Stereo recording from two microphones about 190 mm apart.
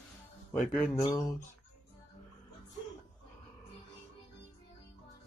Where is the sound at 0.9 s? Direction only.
20° left (ahead or behind).